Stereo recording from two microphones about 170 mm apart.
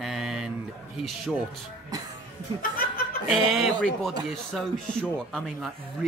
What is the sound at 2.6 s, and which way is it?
Chuckle, 60° left (ahead or behind).